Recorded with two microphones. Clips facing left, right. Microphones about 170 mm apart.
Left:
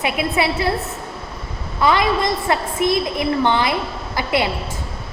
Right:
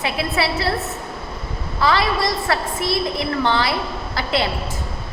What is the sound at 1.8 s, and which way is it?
A woman's voice, 20° left (ahead or behind).